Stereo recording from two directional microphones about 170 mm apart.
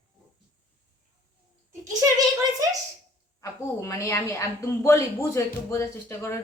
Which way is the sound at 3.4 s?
15° left (ahead or behind).